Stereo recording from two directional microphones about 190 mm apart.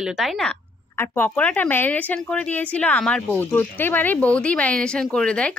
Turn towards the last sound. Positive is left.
turn(degrees=5)  # may be behind; listen again after turning